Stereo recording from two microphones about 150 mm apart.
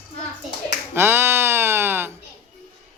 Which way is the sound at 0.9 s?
15° right (ahead or behind).